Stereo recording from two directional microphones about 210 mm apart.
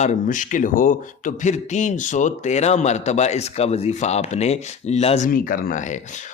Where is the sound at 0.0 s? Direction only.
35° left (ahead or behind).